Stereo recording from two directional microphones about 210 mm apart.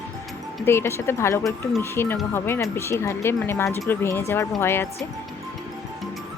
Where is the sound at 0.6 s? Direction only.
10° left (ahead or behind).